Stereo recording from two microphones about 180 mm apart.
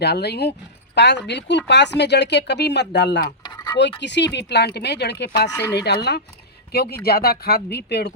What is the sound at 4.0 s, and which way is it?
Speech, 75° left (ahead or behind).